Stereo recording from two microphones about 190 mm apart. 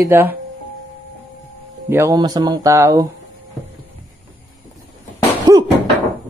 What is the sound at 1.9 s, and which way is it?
Speech, 15° right (ahead or behind).